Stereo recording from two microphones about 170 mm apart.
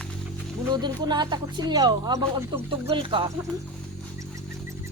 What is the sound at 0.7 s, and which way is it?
Speech, 25° right (ahead or behind).